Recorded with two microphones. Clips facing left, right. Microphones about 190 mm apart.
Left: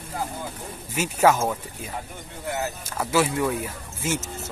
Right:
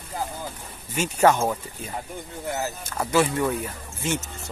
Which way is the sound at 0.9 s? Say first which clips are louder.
Even; 5° left (ahead or behind).